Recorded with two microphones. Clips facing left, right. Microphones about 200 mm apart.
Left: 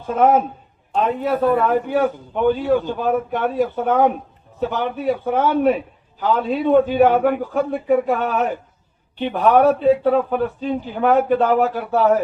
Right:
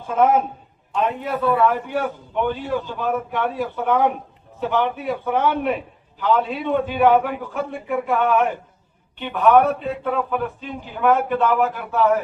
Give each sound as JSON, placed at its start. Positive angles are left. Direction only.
{"t": 1.3, "sound": "a man's voice", "side_deg": 45}
{"t": 2.6, "sound": "a man's voice", "side_deg": 55}
{"t": 3.1, "sound": "a man's voice", "side_deg": 45}